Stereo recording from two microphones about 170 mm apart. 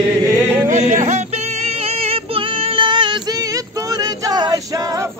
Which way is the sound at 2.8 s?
30° right (ahead or behind).